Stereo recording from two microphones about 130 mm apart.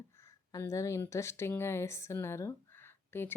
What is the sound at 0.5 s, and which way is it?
Speech, 25° left (ahead or behind).